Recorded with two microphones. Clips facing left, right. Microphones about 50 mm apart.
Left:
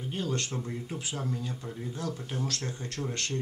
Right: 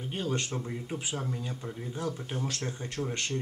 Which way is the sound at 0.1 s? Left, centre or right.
Centre.